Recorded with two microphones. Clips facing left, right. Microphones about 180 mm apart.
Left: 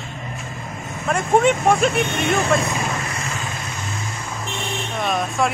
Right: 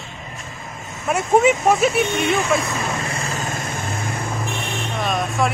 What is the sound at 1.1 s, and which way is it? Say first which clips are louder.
Speech: right 1 dB; 5° right (ahead or behind).